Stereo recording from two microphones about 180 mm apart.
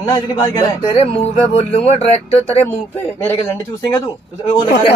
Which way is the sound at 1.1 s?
35° left (ahead or behind).